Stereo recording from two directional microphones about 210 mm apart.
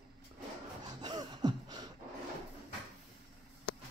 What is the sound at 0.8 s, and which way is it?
Gasp, 20° right (ahead or behind).